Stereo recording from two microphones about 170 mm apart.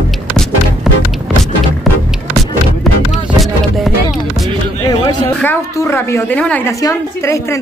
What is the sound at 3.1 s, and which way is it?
Music, centre (ahead or behind).